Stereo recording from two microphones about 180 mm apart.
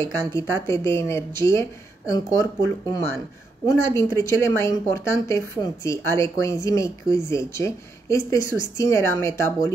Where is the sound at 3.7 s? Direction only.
15° left (ahead or behind).